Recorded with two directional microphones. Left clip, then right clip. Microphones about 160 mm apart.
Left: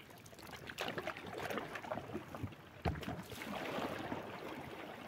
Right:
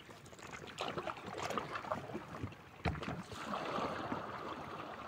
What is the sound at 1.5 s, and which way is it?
Boat, 20° right (ahead or behind).